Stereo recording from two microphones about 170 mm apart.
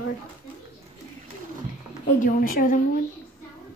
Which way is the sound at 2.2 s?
55° left (ahead or behind).